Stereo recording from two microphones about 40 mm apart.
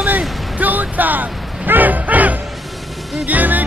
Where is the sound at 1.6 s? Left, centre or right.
Right.